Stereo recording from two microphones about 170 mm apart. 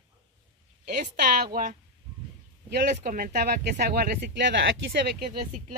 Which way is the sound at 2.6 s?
65° right (ahead or behind).